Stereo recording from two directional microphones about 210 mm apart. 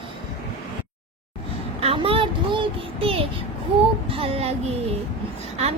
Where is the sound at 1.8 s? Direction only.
25° right (ahead or behind).